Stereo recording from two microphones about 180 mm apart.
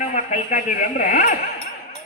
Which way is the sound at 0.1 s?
40° left (ahead or behind).